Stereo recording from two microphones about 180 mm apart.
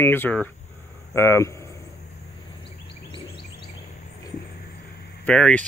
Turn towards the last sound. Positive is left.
turn(degrees=5)  # may be behind; listen again after turning